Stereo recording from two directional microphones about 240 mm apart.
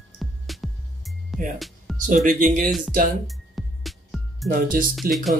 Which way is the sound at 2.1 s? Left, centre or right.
Right.